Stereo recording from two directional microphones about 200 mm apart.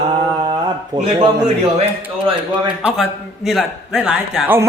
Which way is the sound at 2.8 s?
Centre (ahead or behind).